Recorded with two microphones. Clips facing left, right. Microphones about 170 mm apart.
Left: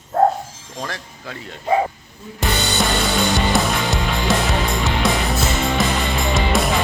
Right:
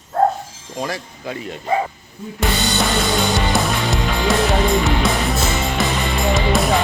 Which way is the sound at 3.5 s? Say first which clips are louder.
Even; centre (ahead or behind).